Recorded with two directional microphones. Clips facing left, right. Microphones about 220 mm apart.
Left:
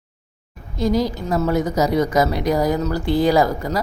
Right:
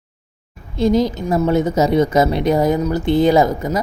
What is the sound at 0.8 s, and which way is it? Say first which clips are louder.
A woman's voice: right 4 dB; 25° right (ahead or behind).